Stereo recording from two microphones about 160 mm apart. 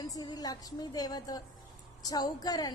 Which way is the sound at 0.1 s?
25° left (ahead or behind).